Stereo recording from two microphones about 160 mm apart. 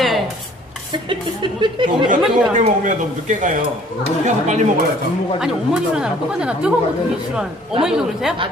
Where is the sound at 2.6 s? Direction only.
50° right (ahead or behind).